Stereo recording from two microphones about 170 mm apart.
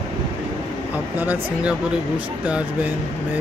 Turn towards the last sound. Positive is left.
turn(degrees=-10)  # may be behind; listen again after turning